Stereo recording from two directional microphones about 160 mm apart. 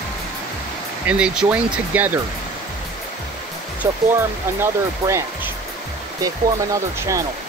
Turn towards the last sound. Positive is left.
turn(degrees=-20)  # may be behind; listen again after turning